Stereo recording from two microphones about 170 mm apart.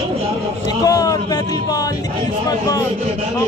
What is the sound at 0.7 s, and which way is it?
A man's voice, 20° left (ahead or behind).